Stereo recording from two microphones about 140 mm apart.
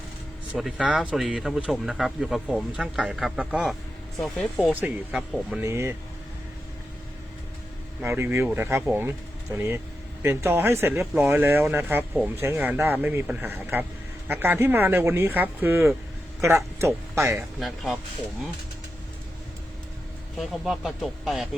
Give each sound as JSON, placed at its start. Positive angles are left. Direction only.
{"t": 0.5, "sound": "speech", "side_deg": -5}
{"t": 4.7, "sound": "speech", "side_deg": -10}
{"t": 8.0, "sound": "speech", "side_deg": -15}
{"t": 17.6, "sound": "speech", "side_deg": 0}
{"t": 20.4, "sound": "speech", "side_deg": 0}